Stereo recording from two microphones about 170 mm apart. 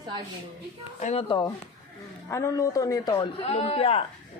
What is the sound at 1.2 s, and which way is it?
A man's voice, 25° left (ahead or behind).